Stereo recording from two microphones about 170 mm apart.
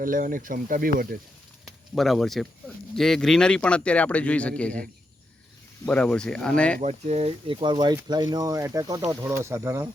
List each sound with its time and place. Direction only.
0.0 s speech: 55° right (ahead or behind)
1.6 s speech: centre (ahead or behind)
5.8 s speech: 5° left (ahead or behind)
6.8 s speech: 40° right (ahead or behind); by 9.9 s 15° right (ahead or behind)